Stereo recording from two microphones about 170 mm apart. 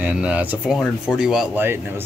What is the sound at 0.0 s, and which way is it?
Speech, 10° right (ahead or behind).